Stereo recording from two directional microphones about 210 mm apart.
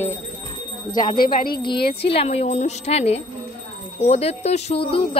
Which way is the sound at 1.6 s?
20° left (ahead or behind).